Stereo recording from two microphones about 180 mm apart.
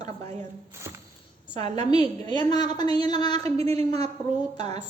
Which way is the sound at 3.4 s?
35° right (ahead or behind).